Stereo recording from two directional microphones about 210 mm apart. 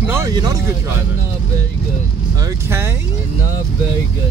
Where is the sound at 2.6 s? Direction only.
10° right (ahead or behind).